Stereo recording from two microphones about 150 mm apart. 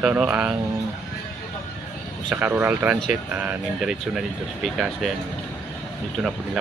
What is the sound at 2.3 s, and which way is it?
Speech, 15° right (ahead or behind).